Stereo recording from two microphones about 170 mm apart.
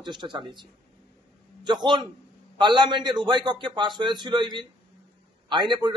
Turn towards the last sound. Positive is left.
turn(degrees=-25)  # may be behind; listen again after turning